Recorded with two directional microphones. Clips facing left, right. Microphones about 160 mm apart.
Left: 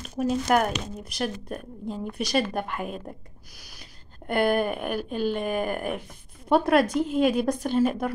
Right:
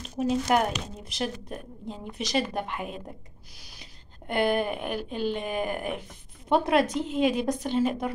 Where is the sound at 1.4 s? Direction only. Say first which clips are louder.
Left 4 dB; 55° left (ahead or behind).